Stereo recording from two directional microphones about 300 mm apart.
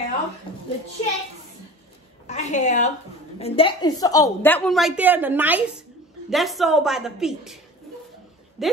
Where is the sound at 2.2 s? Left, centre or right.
Left; by 7.5 s centre.